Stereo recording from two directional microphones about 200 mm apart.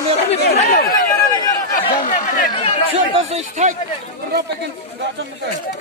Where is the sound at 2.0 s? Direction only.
45° left (ahead or behind).